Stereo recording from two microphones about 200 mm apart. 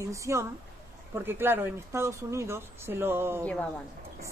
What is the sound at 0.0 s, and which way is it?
Speech, 15° right (ahead or behind).